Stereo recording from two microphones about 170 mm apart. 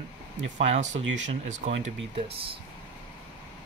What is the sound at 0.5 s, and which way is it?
Speech, 40° right (ahead or behind).